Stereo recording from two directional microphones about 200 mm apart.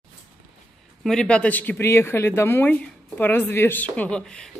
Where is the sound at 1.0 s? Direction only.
5° left (ahead or behind).